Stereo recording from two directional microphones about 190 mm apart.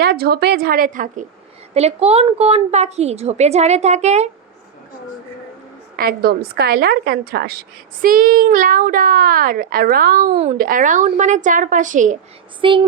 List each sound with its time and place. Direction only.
0.0 s a woman's voice: 55° right (ahead or behind)
1.7 s a woman's voice: 35° right (ahead or behind)
6.0 s a woman's voice: 50° right (ahead or behind)
10.3 s a woman's voice: 35° right (ahead or behind)
10.6 s a woman's voice: 45° right (ahead or behind)
12.6 s a woman's voice: 25° right (ahead or behind)